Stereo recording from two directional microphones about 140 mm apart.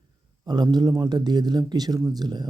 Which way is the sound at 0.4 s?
30° right (ahead or behind).